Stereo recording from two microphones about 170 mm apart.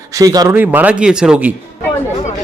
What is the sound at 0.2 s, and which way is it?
Speech, 20° right (ahead or behind).